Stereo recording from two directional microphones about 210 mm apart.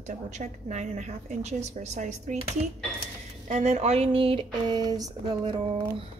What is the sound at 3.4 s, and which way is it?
Speech, 35° right (ahead or behind).